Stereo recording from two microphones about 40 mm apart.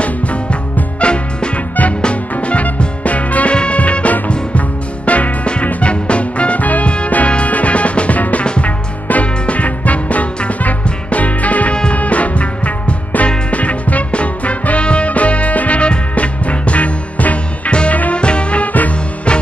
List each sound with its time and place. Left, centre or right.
0.0 s music: left
18.2 s music: left
18.7 s music: left